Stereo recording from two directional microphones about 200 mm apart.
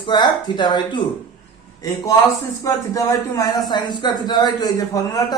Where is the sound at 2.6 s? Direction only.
15° left (ahead or behind).